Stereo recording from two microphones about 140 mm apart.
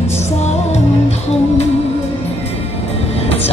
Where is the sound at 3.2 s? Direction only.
45° left (ahead or behind).